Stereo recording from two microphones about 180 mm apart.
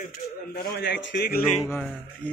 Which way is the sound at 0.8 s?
75° left (ahead or behind).